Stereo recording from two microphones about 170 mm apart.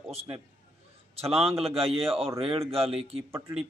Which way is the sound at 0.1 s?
35° right (ahead or behind).